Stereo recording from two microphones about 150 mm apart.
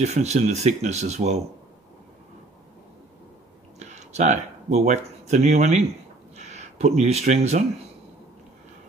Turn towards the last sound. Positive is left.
turn(degrees=-50)  # may be behind; listen again after turning